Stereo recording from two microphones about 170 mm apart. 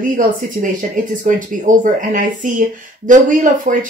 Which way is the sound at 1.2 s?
50° right (ahead or behind).